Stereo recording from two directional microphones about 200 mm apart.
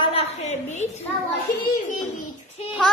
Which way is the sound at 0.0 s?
30° left (ahead or behind).